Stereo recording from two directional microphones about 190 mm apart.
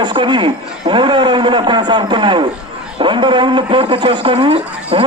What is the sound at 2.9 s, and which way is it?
A man's voice, 25° right (ahead or behind).